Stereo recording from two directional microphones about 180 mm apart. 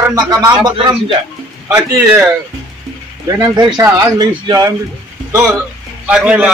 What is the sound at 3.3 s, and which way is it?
A man's voice, 20° right (ahead or behind).